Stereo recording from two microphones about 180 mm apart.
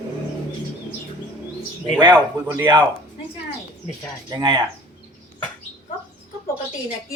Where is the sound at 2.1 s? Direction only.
10° right (ahead or behind).